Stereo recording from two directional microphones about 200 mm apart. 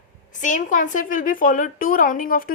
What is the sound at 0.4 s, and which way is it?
A woman's voice, 40° left (ahead or behind).